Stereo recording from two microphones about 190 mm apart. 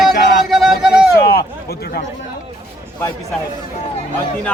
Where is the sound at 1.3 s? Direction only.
55° left (ahead or behind).